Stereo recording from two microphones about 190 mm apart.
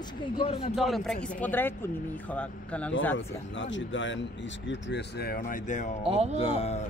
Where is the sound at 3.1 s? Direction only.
75° left (ahead or behind); by 5.9 s 40° left (ahead or behind).